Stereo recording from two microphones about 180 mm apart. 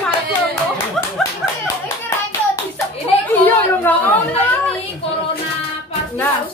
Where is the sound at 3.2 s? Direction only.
10° left (ahead or behind).